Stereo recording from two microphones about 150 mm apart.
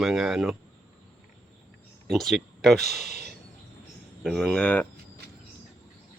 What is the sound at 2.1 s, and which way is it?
Speech, centre (ahead or behind).